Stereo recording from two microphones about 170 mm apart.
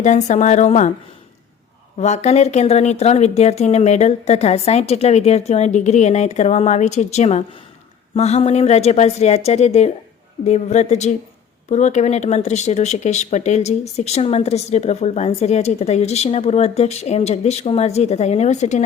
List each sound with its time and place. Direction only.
0.0 s speech: 45° left (ahead or behind)
2.0 s speech: 40° left (ahead or behind)